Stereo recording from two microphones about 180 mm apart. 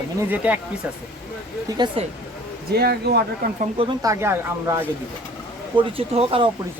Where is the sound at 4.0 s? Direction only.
15° right (ahead or behind).